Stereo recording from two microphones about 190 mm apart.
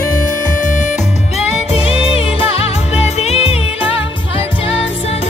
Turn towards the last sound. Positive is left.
turn(degrees=30)  # may be behind; listen again after turning